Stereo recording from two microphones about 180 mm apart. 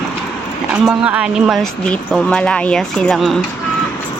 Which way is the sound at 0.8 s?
5° right (ahead or behind).